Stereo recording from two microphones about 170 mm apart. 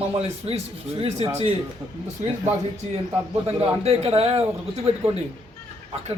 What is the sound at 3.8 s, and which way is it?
A man's voice, 40° right (ahead or behind).